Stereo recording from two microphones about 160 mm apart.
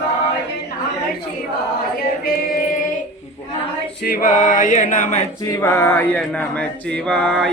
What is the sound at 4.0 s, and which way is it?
Choir, 65° left (ahead or behind).